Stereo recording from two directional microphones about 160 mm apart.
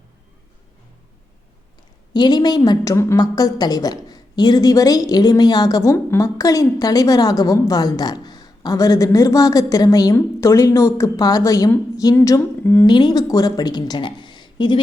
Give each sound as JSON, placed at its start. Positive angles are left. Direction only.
{"t": 2.1, "sound": "a woman's voice", "side_deg": 25}
{"t": 12.8, "sound": "a woman's voice", "side_deg": 25}